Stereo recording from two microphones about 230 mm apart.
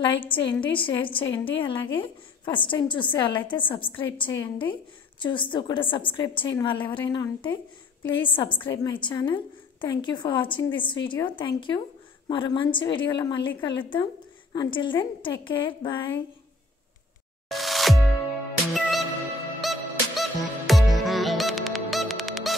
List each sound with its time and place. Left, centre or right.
0.0 s a woman's voice: left
17.5 s music: centre